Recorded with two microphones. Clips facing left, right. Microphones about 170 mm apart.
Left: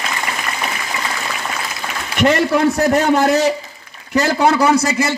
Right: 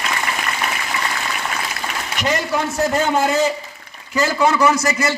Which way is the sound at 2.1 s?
60° left (ahead or behind).